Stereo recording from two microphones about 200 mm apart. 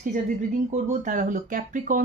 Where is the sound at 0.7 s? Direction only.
40° right (ahead or behind).